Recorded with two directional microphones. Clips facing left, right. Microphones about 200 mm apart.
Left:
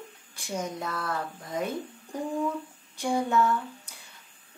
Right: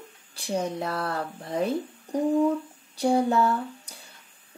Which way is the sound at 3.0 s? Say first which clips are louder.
Right 4 dB; 35° right (ahead or behind).